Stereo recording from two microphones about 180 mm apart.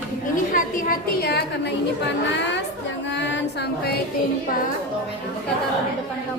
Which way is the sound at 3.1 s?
80° left.